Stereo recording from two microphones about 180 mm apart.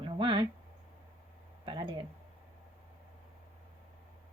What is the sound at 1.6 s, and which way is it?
Speech, 25° right (ahead or behind).